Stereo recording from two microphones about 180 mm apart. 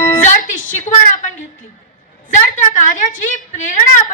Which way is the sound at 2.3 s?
45° left (ahead or behind).